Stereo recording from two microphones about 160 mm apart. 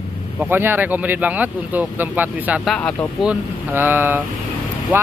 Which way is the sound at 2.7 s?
5° left (ahead or behind).